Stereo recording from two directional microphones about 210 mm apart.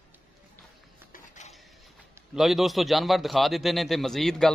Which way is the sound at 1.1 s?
35° left (ahead or behind).